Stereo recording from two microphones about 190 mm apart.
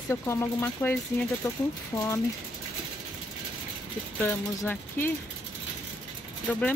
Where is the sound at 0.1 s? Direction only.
15° left (ahead or behind).